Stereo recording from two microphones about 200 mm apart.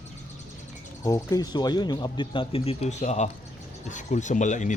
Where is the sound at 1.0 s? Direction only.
15° left (ahead or behind).